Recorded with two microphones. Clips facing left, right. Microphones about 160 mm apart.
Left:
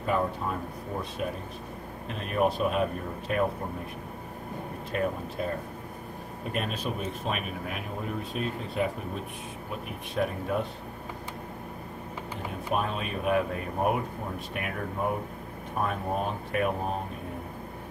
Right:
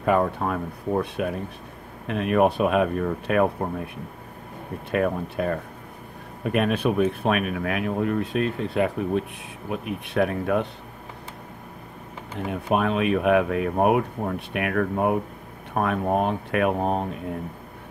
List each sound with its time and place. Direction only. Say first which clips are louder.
0.0 s speech: right 6 dB; 70° right (ahead or behind)
4.9 s speech: right 6 dB; 65° right (ahead or behind)
12.7 s speech: right 9 dB; 75° right (ahead or behind)